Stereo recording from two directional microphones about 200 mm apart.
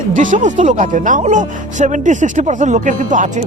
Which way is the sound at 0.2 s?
40° right (ahead or behind).